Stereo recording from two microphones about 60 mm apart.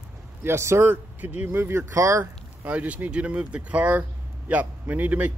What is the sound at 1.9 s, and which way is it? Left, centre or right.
Speech, right.